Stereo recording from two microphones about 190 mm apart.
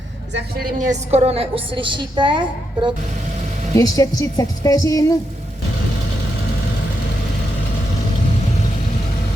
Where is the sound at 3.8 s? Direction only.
20° left (ahead or behind).